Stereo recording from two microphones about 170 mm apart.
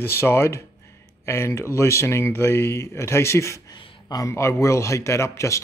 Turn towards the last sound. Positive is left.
turn(degrees=15)  # may be behind; listen again after turning